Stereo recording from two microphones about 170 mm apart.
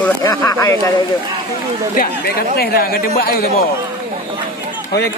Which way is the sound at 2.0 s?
65° left (ahead or behind).